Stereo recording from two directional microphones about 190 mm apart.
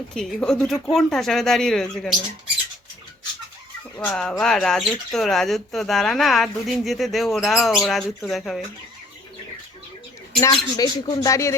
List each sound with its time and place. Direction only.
0.1 s speech: 5° left (ahead or behind)
3.9 s speech: 5° left (ahead or behind)
10.4 s speech: 20° left (ahead or behind)